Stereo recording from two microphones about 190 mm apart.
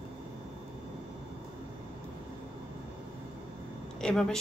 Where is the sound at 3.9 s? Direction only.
5° left (ahead or behind).